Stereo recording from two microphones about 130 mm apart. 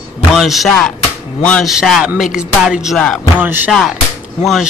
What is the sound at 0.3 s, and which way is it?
Music, centre (ahead or behind).